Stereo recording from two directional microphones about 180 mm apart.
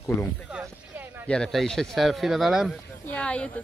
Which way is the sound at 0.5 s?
10° right (ahead or behind).